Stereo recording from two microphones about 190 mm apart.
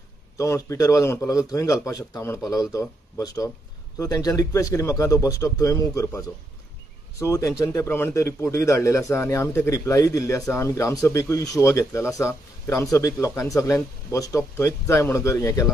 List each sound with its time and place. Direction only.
0.4 s a man's voice: 15° left (ahead or behind)